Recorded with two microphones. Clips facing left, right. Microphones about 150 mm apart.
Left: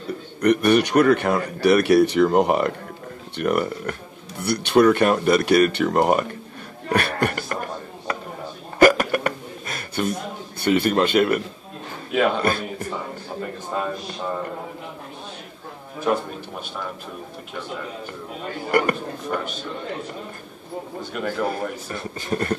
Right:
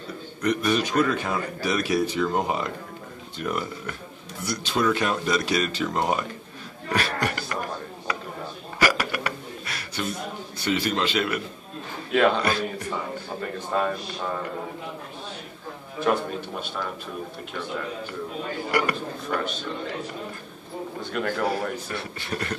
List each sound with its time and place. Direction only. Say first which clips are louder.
0.4 s a man's voice: left 7 dB; 65° left (ahead or behind)
6.9 s a sound: left 4 dB; 55° left (ahead or behind)
8.7 s hiccup: left 9 dB; 50° left (ahead or behind)
10.6 s speech: left 6 dB; 55° left (ahead or behind)
12.1 s a man's voice: even; 5° left (ahead or behind)
12.4 s speech: left 2 dB; 50° left (ahead or behind)
18.7 s speech: left 5 dB; 50° left (ahead or behind)
21.1 s a man's voice: left 1 dB; centre (ahead or behind)
21.5 s speech: even; 45° left (ahead or behind)